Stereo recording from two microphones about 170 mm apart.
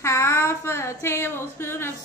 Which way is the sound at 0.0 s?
15° left (ahead or behind).